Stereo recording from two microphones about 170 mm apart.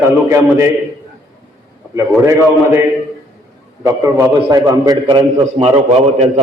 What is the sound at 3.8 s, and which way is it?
A man's voice, 15° right (ahead or behind).